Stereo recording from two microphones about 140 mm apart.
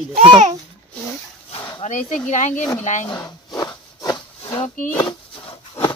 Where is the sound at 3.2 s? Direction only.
25° left (ahead or behind).